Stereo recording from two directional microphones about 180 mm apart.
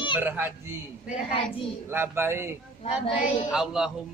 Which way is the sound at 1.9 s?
10° right (ahead or behind).